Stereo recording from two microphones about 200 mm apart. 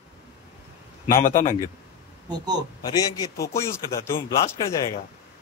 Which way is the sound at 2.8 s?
20° left (ahead or behind).